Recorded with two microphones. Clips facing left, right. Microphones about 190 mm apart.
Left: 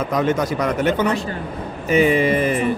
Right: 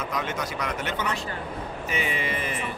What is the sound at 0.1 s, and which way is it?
A man's voice, 40° left (ahead or behind).